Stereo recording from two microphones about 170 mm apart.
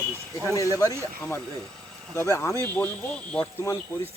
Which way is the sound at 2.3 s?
15° left (ahead or behind).